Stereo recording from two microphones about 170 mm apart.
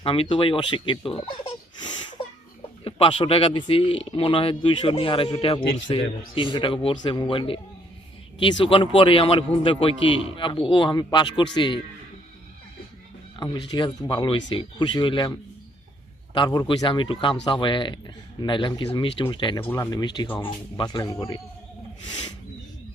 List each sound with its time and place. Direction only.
0.0 s a man's voice: 30° left (ahead or behind)
13.4 s a man's voice: 25° left (ahead or behind)
19.6 s a man's voice: 15° left (ahead or behind)